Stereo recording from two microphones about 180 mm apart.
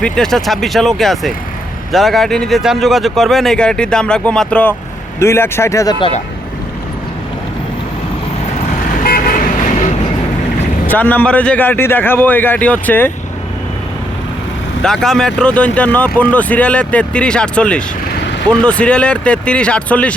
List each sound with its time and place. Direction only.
0.0 s speech: centre (ahead or behind); by 6.1 s 20° left (ahead or behind)
9.0 s vehicle: 50° left (ahead or behind)
10.8 s speech: 10° left (ahead or behind)
14.8 s speech: 5° left (ahead or behind)